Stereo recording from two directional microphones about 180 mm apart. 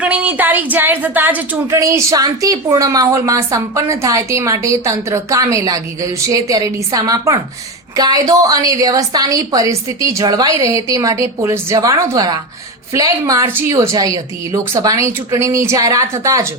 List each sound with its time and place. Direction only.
0.0 s a woman's voice: 10° right (ahead or behind)